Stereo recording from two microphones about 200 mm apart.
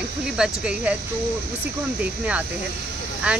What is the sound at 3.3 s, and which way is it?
Speech, 5° right (ahead or behind).